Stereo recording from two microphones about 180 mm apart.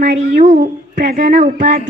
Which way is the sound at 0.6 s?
50° right (ahead or behind).